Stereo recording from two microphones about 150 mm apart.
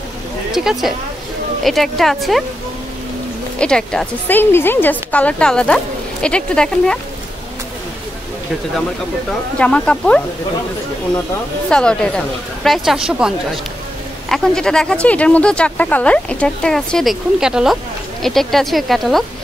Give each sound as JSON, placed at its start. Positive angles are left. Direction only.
{"t": 0.5, "sound": "speech", "side_deg": 0}
{"t": 3.5, "sound": "a woman's voice", "side_deg": 5}
{"t": 9.6, "sound": "a woman's voice", "side_deg": 10}
{"t": 11.7, "sound": "speech", "side_deg": 5}